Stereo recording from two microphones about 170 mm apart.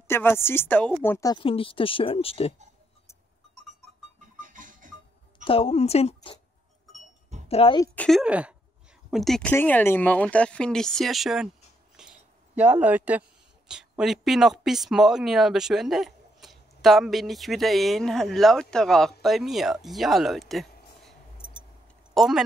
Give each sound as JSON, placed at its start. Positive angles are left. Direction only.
{"t": 0.1, "sound": "speech", "side_deg": 15}
{"t": 1.3, "sound": "speech", "side_deg": 30}
{"t": 4.4, "sound": "a sound", "side_deg": -50}
{"t": 5.4, "sound": "speech", "side_deg": 35}
{"t": 7.4, "sound": "a woman's voice", "side_deg": 35}
{"t": 7.8, "sound": "speech", "side_deg": 10}
{"t": 8.2, "sound": "speech", "side_deg": -5}
{"t": 12.0, "sound": "a sound", "side_deg": -5}
{"t": 13.7, "sound": "speech", "side_deg": -5}
{"t": 19.2, "sound": "a sound", "side_deg": 0}
{"t": 22.1, "sound": "speech", "side_deg": 0}